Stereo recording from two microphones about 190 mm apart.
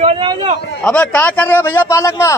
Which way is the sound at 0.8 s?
10° left (ahead or behind).